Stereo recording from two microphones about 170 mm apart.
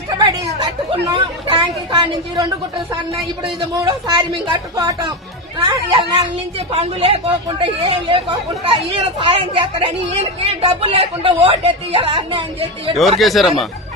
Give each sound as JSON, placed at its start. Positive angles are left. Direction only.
{"t": 0.6, "sound": "speech", "side_deg": -25}
{"t": 3.8, "sound": "speech", "side_deg": -25}
{"t": 13.0, "sound": "speech", "side_deg": 0}